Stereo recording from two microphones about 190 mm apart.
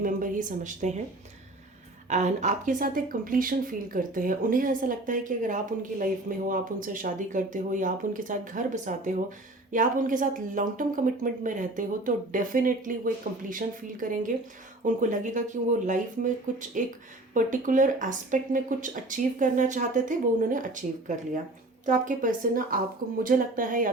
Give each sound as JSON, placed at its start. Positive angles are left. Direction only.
{"t": 0.0, "sound": "speech", "side_deg": -45}
{"t": 2.0, "sound": "speech", "side_deg": -40}
{"t": 21.8, "sound": "speech", "side_deg": -45}